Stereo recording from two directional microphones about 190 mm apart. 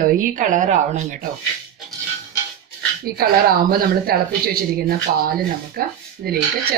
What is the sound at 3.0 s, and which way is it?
Speech, 50° right (ahead or behind).